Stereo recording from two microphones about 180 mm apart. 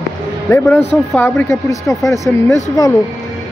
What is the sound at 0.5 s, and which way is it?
Speech, 15° left (ahead or behind).